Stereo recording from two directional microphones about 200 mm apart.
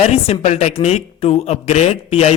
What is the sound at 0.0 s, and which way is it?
A woman's voice, 30° left (ahead or behind).